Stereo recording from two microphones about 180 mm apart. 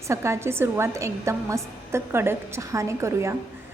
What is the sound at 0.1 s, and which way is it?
A woman's voice, 15° right (ahead or behind).